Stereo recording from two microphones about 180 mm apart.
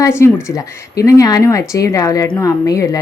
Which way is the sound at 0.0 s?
15° left (ahead or behind).